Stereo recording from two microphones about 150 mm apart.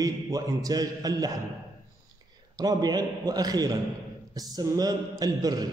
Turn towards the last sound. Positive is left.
turn(degrees=-25)  # may be behind; listen again after turning